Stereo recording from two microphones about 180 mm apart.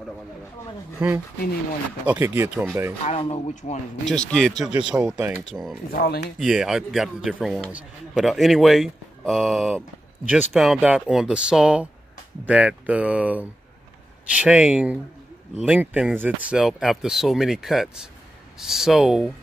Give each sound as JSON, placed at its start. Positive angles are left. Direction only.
{"t": 0.9, "sound": "speech", "side_deg": -15}
{"t": 3.0, "sound": "speech", "side_deg": 35}
{"t": 4.0, "sound": "a man's voice", "side_deg": 5}
{"t": 5.9, "sound": "speech", "side_deg": 60}
{"t": 6.4, "sound": "a man's voice", "side_deg": -5}